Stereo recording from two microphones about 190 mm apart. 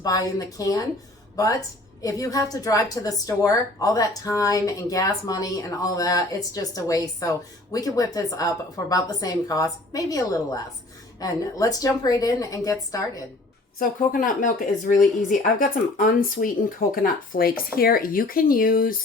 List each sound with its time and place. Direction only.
0.0 s a woman's voice: 20° left (ahead or behind)
2.0 s a woman's voice: 20° left (ahead or behind)
13.7 s speech: 45° left (ahead or behind)